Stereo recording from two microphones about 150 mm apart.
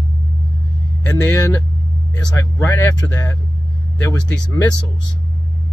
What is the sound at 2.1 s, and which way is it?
Speech, 20° left (ahead or behind).